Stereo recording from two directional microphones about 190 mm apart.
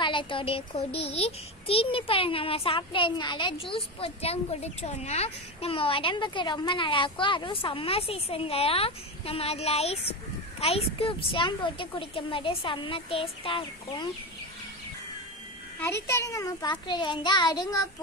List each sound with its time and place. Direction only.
0.0 s a child's voice: 25° left (ahead or behind)
15.8 s a child's voice: 15° left (ahead or behind)